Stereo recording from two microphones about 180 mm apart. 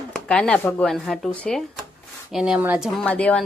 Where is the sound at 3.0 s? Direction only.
5° left (ahead or behind).